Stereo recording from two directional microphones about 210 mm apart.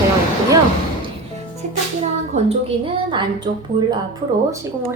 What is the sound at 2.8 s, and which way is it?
A woman's voice, 20° right (ahead or behind).